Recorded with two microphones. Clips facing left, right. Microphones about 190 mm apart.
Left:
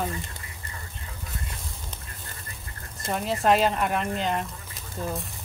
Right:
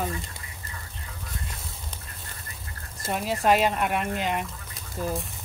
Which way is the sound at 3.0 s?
5° right (ahead or behind).